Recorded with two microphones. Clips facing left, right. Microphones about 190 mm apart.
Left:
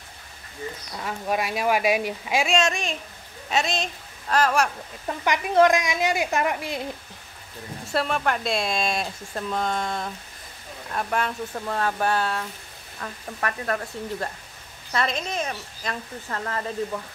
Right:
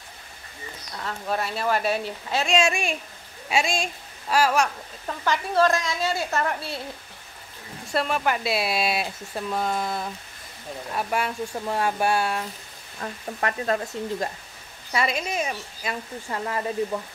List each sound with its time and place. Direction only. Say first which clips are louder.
0.9 s a woman's voice: left 1 dB; 10° left (ahead or behind)
2.5 s speech: right 1 dB; 10° right (ahead or behind)
5.0 s a woman's voice: left 1 dB; 15° left (ahead or behind)
7.9 s speech: even; centre (ahead or behind); by 14.3 s 20° right (ahead or behind)
14.9 s speech: right 1 dB; 10° right (ahead or behind)